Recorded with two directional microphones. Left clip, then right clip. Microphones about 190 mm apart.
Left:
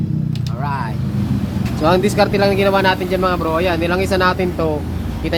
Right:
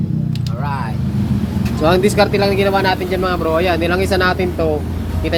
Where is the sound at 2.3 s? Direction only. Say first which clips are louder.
Even; 15° left (ahead or behind).